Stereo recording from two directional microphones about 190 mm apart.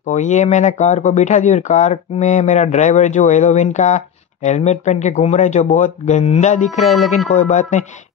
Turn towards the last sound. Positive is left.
turn(degrees=40)  # may be behind; listen again after turning